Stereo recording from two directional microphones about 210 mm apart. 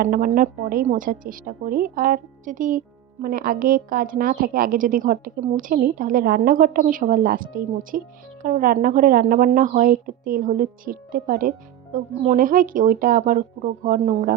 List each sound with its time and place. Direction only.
0.0 s speech: 40° right (ahead or behind)